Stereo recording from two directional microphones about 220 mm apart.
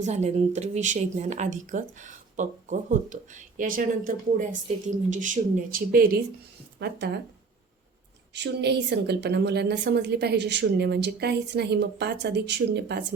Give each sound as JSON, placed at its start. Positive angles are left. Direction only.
{"t": 0.0, "sound": "speech", "side_deg": -30}
{"t": 8.3, "sound": "a woman's voice", "side_deg": -50}